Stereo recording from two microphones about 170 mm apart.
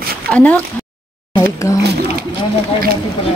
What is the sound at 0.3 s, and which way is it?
Speech, 10° left (ahead or behind).